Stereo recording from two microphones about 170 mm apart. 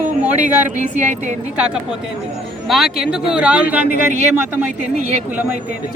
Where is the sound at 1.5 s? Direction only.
5° right (ahead or behind).